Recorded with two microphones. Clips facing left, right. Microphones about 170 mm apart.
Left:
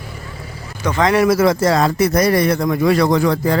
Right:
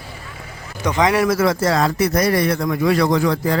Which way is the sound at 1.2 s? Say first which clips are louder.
Left 3 dB; 15° left (ahead or behind).